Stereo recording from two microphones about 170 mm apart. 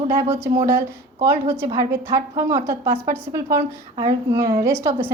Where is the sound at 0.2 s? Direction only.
15° right (ahead or behind).